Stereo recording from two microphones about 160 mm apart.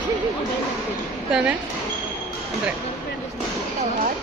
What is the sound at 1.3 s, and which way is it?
Speech, 5° right (ahead or behind).